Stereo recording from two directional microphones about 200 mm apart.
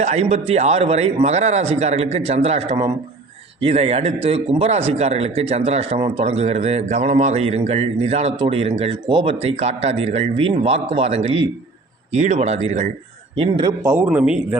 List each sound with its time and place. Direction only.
0.0 s speech: 35° right (ahead or behind)
13.8 s speech: 10° right (ahead or behind)